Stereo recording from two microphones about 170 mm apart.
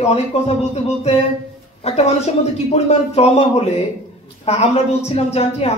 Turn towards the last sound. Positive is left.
turn(degrees=40)  # may be behind; listen again after turning